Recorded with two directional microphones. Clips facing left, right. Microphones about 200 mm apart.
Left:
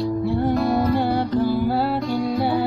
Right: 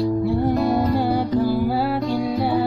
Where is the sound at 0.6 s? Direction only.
20° right (ahead or behind).